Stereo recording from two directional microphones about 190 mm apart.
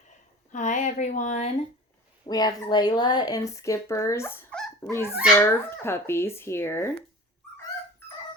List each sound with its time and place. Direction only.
0.5 s speech: 40° left (ahead or behind)
2.2 s speech: 20° left (ahead or behind)